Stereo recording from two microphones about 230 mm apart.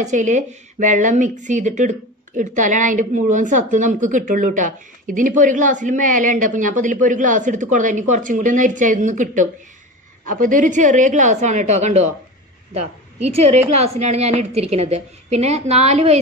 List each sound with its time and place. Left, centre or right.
0.0 s speech: right
13.2 s a woman's voice: right